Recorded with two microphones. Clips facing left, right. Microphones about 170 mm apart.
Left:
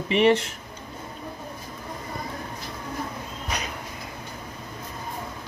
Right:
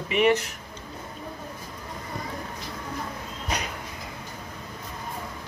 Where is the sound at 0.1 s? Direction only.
30° left (ahead or behind).